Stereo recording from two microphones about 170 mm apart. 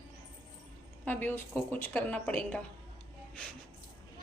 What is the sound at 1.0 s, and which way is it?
A woman's voice, 10° left (ahead or behind).